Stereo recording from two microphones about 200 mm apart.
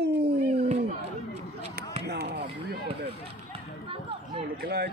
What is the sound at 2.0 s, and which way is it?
Basketball bounce, 55° right (ahead or behind).